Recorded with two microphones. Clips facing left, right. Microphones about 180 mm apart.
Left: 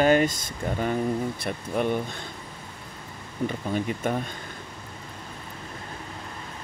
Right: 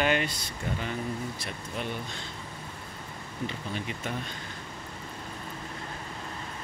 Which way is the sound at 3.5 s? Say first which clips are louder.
Left 10 dB; 50° left (ahead or behind).